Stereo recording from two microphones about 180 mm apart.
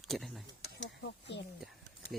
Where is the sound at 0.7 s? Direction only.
75° left (ahead or behind).